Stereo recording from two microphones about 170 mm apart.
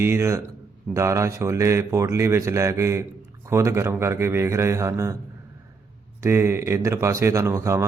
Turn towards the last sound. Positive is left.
turn(degrees=-15)  # may be behind; listen again after turning